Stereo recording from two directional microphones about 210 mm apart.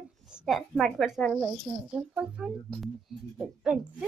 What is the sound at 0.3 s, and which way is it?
Speech, centre (ahead or behind).